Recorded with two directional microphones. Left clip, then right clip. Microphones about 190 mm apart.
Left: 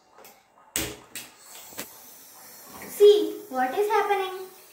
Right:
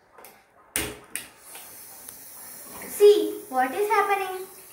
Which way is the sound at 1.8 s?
5° right (ahead or behind).